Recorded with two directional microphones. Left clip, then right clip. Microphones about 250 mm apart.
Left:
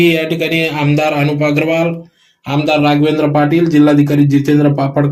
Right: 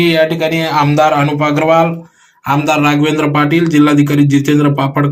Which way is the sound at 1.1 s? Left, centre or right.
Centre.